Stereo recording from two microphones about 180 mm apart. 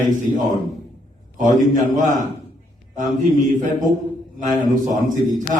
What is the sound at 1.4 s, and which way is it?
Speech, 45° right (ahead or behind).